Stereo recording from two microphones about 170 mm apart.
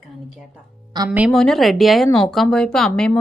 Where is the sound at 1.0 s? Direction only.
25° right (ahead or behind).